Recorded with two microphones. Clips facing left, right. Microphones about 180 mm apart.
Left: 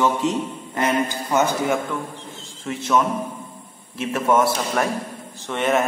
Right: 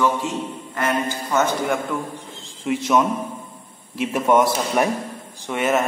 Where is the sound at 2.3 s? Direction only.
15° right (ahead or behind).